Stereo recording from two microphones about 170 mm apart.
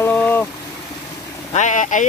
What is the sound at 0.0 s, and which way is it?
Vehicle, 10° left (ahead or behind).